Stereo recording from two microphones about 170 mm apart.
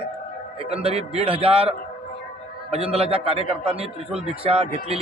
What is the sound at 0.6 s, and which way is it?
A man's voice, 35° right (ahead or behind).